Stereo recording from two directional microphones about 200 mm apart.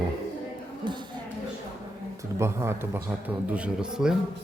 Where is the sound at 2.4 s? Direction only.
15° right (ahead or behind).